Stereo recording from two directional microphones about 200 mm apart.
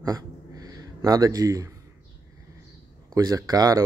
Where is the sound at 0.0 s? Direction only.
20° right (ahead or behind).